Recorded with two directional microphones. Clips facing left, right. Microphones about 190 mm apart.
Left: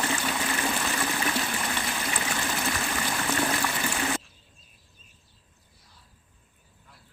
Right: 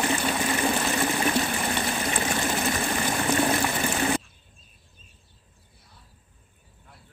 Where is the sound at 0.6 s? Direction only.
20° right (ahead or behind).